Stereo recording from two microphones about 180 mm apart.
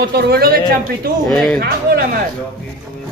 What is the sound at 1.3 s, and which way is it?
Speech, 5° left (ahead or behind).